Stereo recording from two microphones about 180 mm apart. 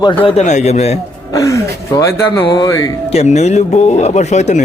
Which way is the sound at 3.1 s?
40° left (ahead or behind).